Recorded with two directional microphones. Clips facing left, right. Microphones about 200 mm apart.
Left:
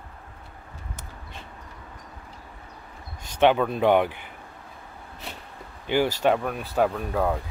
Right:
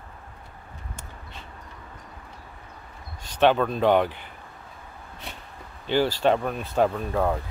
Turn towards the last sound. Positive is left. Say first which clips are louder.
# even
turn(degrees=5)  # may be behind; listen again after turning